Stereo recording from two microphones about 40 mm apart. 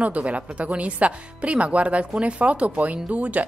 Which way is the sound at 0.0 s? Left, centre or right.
Right.